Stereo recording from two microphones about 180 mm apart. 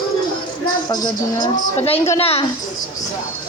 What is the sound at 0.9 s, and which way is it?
Speech, 25° left (ahead or behind).